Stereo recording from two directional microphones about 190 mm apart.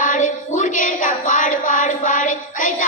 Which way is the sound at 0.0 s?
45° left (ahead or behind).